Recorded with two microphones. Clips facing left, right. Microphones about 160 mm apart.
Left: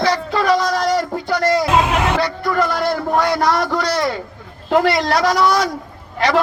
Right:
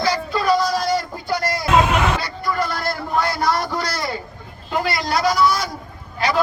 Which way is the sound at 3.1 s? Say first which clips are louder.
Left 3 dB; 90° left.